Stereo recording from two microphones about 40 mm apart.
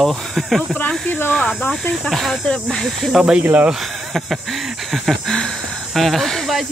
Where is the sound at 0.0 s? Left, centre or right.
Centre.